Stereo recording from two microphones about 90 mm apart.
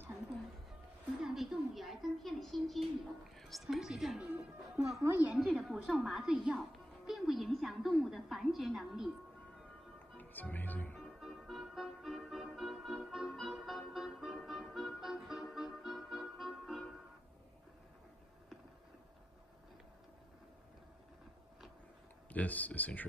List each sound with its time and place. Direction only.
1.2 s a child's voice: centre (ahead or behind)
4.2 s a woman's voice: 15° right (ahead or behind)
5.3 s a woman's voice: centre (ahead or behind)
10.1 s speech: 20° left (ahead or behind)
11.0 s music: centre (ahead or behind)
22.3 s speech: 15° left (ahead or behind)